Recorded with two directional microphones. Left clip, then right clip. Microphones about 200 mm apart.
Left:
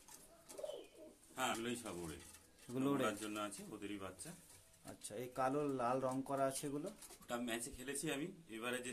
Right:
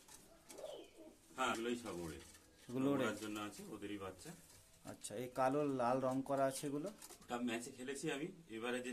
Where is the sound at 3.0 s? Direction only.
55° left (ahead or behind).